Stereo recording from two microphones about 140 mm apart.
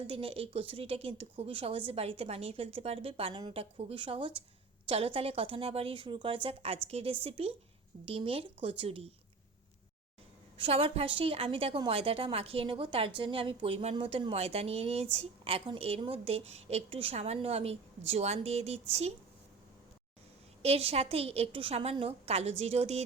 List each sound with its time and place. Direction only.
0.0 s a woman's voice: 45° right (ahead or behind)
10.6 s a woman's voice: 40° right (ahead or behind)
20.6 s a woman's voice: 45° right (ahead or behind)